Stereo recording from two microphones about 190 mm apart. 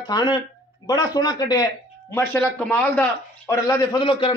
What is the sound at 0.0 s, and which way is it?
Speech, 20° left (ahead or behind).